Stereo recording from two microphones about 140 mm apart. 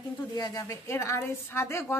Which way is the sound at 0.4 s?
20° left (ahead or behind).